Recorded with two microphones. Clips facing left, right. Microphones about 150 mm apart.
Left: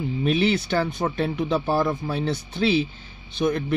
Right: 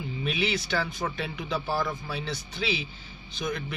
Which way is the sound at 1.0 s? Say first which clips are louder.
Left 8 dB; 35° left (ahead or behind).